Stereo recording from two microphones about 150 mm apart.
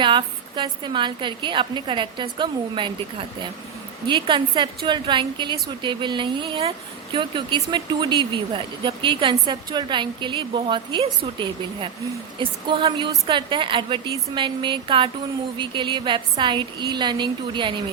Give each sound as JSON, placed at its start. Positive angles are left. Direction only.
{"t": 0.0, "sound": "a woman's voice", "side_deg": -30}